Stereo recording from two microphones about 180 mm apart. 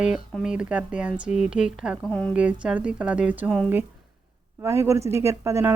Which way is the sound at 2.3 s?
5° right (ahead or behind).